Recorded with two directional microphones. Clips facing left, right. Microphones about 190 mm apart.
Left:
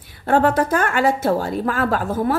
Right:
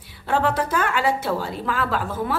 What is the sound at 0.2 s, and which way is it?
A woman's voice, 50° left (ahead or behind).